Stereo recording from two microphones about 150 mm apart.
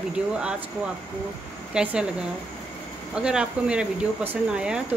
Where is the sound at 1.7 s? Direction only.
5° right (ahead or behind).